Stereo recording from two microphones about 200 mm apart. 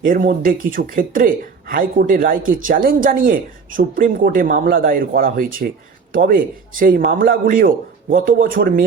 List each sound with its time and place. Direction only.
0.0 s speech: 45° right (ahead or behind)